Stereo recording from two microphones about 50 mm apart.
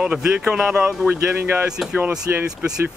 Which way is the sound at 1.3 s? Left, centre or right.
Right.